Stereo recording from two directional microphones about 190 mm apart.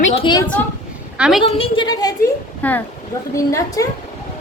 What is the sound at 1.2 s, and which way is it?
Speech, 5° right (ahead or behind).